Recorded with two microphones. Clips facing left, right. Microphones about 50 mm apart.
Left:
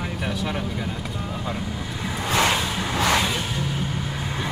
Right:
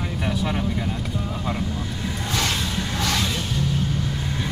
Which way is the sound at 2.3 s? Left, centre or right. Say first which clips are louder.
Left 5 dB; left.